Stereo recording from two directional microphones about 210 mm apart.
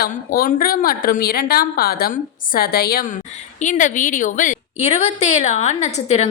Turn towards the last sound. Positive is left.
turn(degrees=35)  # may be behind; listen again after turning